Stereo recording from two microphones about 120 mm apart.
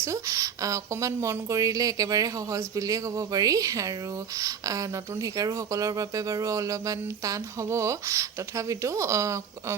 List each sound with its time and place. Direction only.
0.0 s speech: 25° right (ahead or behind)